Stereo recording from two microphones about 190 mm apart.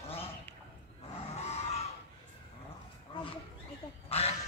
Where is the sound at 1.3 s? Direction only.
35° left (ahead or behind).